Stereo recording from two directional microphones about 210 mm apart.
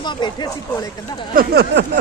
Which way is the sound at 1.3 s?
45° right (ahead or behind).